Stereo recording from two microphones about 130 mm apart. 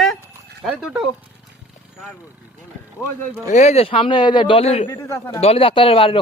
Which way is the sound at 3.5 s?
60° left (ahead or behind).